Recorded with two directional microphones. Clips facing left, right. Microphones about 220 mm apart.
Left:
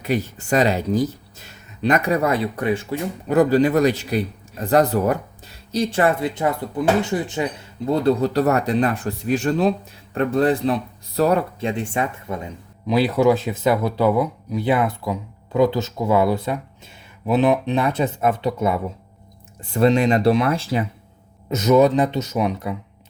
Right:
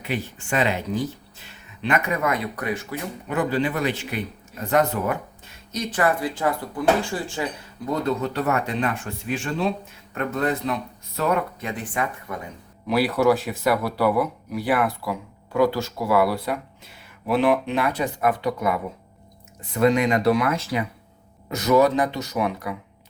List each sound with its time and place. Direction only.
0.0 s speech: 40° left (ahead or behind); by 7.4 s 20° left (ahead or behind)
7.9 s speech: 30° left (ahead or behind)